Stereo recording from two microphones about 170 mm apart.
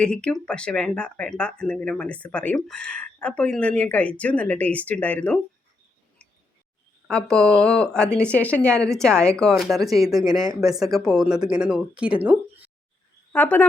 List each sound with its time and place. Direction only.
0.0 s speech: 5° left (ahead or behind)
7.1 s speech: 5° left (ahead or behind)
10.1 s speech: 20° right (ahead or behind)
11.0 s speech: 5° right (ahead or behind)
13.3 s speech: 10° left (ahead or behind)